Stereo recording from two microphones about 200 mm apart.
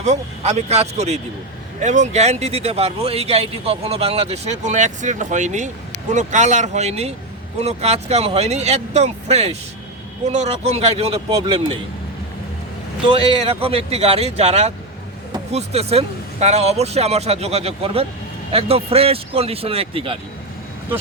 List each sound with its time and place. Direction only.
0.0 s speech: 35° right (ahead or behind)
13.1 s speech: 30° right (ahead or behind)